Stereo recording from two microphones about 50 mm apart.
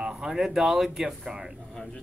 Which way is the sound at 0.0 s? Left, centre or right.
Centre.